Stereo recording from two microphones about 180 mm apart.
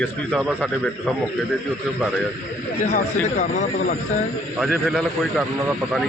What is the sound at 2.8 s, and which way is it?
Speech, 45° left (ahead or behind).